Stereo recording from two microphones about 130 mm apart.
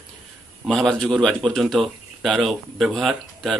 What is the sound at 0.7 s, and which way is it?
Speech, 5° left (ahead or behind).